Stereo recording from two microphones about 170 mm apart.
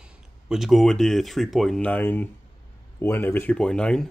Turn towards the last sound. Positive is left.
turn(degrees=5)  # may be behind; listen again after turning